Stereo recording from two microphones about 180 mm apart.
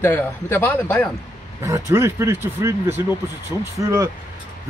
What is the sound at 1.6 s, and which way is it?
A man's voice, 15° right (ahead or behind).